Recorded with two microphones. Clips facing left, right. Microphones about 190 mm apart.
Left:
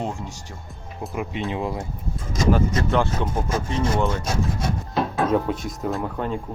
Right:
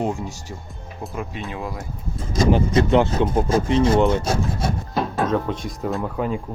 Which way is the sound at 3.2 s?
20° right (ahead or behind).